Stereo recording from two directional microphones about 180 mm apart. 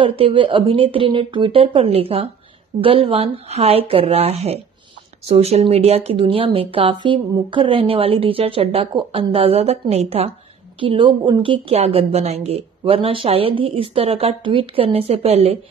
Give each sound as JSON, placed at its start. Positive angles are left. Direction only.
{"t": 0.0, "sound": "a woman's voice", "side_deg": -30}